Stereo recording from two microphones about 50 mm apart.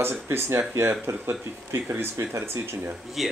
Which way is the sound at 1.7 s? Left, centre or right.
Right.